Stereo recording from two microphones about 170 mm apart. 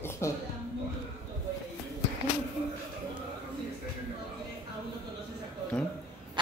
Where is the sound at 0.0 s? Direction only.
15° left (ahead or behind).